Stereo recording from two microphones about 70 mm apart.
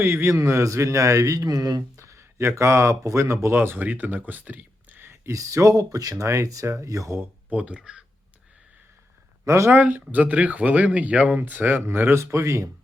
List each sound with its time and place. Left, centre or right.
0.0 s a man's voice: right
2.0 s a sound: right
2.6 s a man's voice: right
3.5 s speech: right
4.3 s a sound: right
5.3 s a man's voice: right
6.2 s a man's voice: right
7.5 s speech: centre
9.4 s speech: right
9.7 s speech: right
12.2 s a man's voice: right